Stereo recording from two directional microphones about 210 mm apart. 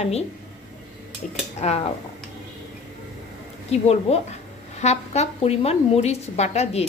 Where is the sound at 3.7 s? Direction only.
30° left (ahead or behind).